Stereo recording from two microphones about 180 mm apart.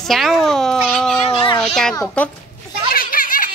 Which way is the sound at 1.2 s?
30° left (ahead or behind).